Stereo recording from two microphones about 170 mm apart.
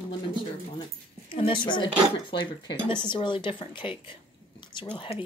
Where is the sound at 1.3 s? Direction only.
30° left (ahead or behind).